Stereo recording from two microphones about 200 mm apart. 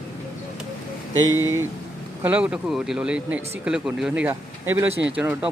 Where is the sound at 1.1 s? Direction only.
85° right.